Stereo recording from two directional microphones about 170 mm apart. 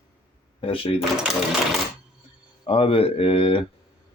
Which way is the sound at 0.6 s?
30° left (ahead or behind).